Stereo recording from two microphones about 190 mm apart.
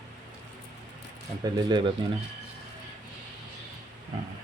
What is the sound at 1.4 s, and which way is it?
Speech, 20° right (ahead or behind).